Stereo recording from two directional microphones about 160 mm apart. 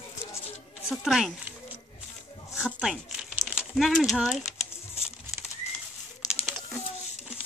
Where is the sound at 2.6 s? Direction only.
Centre (ahead or behind).